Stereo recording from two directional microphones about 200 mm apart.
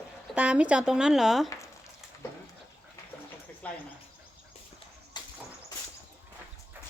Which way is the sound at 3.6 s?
5° left (ahead or behind).